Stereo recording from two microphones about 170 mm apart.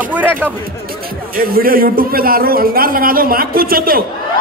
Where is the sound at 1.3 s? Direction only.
60° right (ahead or behind).